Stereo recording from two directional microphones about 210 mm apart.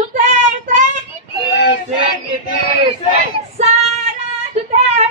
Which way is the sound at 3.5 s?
30° right (ahead or behind).